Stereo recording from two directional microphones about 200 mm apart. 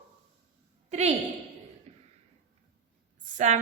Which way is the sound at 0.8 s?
35° right (ahead or behind).